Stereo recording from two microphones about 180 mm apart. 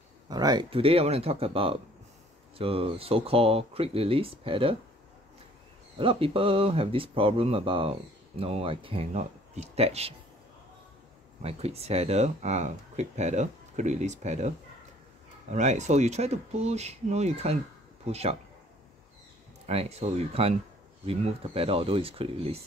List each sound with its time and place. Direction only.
0.3 s speech: 20° right (ahead or behind)
5.9 s speech: 30° right (ahead or behind)
11.4 s speech: 35° right (ahead or behind)
15.5 s speech: 40° right (ahead or behind)
19.6 s speech: 35° right (ahead or behind)